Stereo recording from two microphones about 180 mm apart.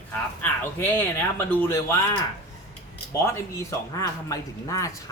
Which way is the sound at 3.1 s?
15° left (ahead or behind).